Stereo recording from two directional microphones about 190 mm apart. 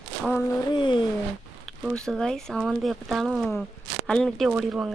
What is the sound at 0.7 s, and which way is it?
Speech, 25° left (ahead or behind).